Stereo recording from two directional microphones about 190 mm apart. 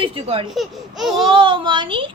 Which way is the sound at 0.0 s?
30° right (ahead or behind).